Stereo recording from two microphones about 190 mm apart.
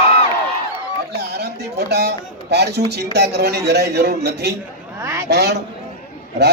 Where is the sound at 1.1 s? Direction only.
60° right (ahead or behind).